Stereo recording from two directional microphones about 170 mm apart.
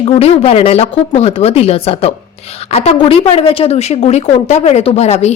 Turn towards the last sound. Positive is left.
turn(degrees=40)  # may be behind; listen again after turning